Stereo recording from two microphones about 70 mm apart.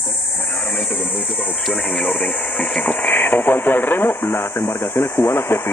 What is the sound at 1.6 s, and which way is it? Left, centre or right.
Speech, centre.